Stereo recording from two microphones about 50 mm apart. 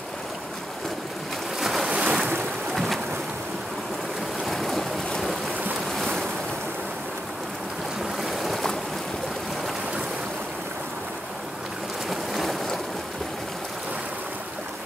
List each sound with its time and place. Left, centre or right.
1.6 s boat: centre
1.9 s boat: right
2.7 s a sound: centre
4.5 s boat: centre
8.2 s boat: centre
12.1 s boat: centre